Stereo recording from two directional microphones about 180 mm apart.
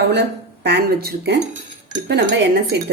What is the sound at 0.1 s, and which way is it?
Speech, 70° right (ahead or behind).